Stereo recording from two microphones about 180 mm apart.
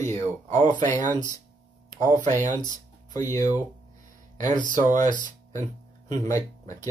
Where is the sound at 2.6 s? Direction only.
20° left (ahead or behind).